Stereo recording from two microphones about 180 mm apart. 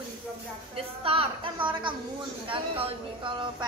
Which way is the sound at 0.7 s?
30° right (ahead or behind).